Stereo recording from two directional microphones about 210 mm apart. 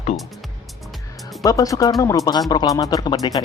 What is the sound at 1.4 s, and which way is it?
Speech, 15° left (ahead or behind).